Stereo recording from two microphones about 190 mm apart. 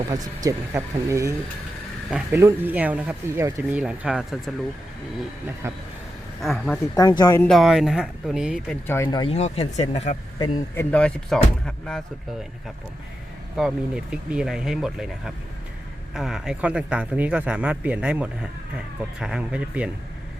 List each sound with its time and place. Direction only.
0.1 s speech: 15° right (ahead or behind)
2.0 s speech: 5° right (ahead or behind)
5.6 s speech: 15° right (ahead or behind)
6.4 s speech: centre (ahead or behind)
6.9 s a man's voice: 20° left (ahead or behind)
7.4 s speech: centre (ahead or behind)
8.9 s speech: 20° left (ahead or behind); by 10.2 s 35° left (ahead or behind)
10.3 s a man's voice: 20° left (ahead or behind)
10.9 s speech: 5° left (ahead or behind)
13.6 s speech: centre (ahead or behind)